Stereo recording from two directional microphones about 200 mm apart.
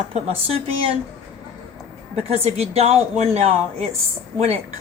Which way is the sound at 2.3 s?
30° right (ahead or behind).